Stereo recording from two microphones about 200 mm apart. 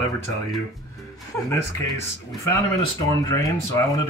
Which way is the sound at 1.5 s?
15° left (ahead or behind).